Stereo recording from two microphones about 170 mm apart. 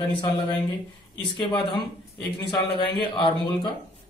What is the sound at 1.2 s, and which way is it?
Speech, 30° left (ahead or behind).